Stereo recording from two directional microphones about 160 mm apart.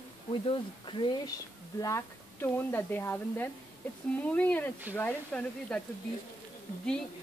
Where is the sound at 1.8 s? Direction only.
20° left (ahead or behind).